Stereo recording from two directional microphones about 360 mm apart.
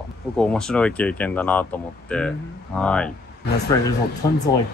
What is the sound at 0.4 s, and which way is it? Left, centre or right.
Speech, centre.